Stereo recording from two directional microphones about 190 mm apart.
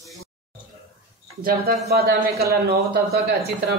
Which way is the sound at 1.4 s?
55° right (ahead or behind).